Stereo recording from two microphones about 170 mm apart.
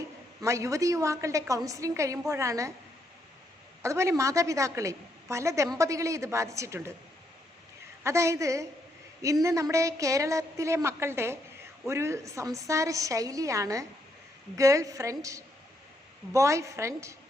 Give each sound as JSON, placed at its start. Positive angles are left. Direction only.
{"t": 0.4, "sound": "a woman's voice", "side_deg": -20}
{"t": 3.8, "sound": "a woman's voice", "side_deg": -15}
{"t": 8.0, "sound": "a woman's voice", "side_deg": -15}